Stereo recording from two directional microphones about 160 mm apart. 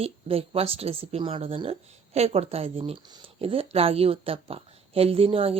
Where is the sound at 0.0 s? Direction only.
40° right (ahead or behind).